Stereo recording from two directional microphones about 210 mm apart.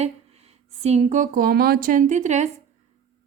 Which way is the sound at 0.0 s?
30° right (ahead or behind).